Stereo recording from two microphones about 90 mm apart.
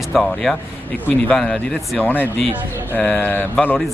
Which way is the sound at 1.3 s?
5° left (ahead or behind).